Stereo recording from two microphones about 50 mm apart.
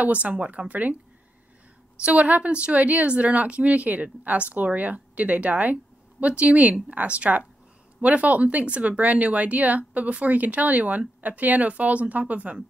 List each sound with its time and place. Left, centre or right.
0.0 s speech: right
2.0 s speech: right